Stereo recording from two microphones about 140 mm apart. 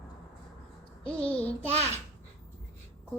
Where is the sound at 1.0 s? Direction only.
10° left (ahead or behind).